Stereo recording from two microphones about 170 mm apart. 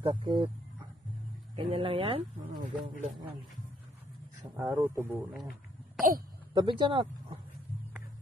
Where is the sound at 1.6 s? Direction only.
30° right (ahead or behind).